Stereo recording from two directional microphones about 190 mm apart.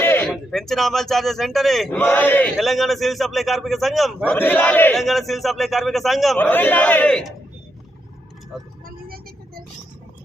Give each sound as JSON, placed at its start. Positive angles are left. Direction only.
{"t": 0.0, "sound": "a man's voice", "side_deg": 10}
{"t": 6.3, "sound": "a man's voice", "side_deg": 10}
{"t": 9.0, "sound": "vehicle", "side_deg": -50}